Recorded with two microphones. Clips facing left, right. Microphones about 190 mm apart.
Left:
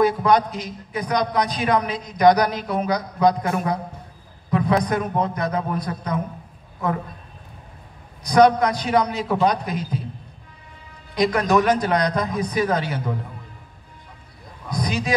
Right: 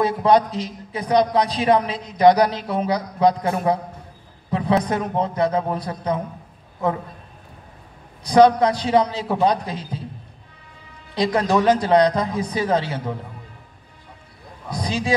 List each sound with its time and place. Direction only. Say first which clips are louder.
0.0 s a man's voice: right 1 dB; 30° right (ahead or behind)
8.2 s a man's voice: right 2 dB; 30° right (ahead or behind)
11.1 s a man's voice: even; 30° right (ahead or behind)
14.7 s a man's voice: right 1 dB; 30° right (ahead or behind)